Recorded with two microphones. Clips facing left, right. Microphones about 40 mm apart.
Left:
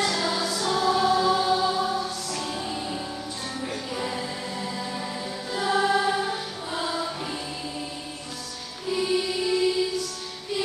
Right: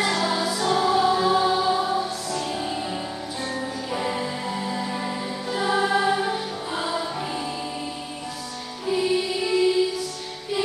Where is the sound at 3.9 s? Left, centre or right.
Centre.